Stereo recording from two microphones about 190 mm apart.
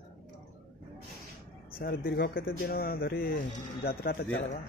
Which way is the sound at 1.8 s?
50° left (ahead or behind).